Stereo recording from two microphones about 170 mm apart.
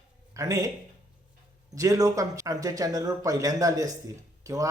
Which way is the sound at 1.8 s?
20° right (ahead or behind).